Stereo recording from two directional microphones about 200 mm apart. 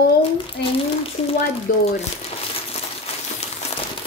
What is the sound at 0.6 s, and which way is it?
Speech, 55° left (ahead or behind).